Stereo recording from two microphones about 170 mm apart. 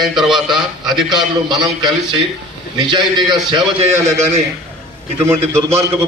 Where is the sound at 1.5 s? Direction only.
25° right (ahead or behind).